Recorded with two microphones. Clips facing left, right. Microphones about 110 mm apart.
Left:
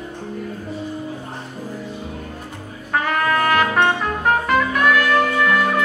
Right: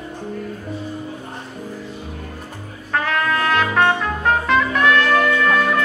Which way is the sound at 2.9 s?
5° left (ahead or behind).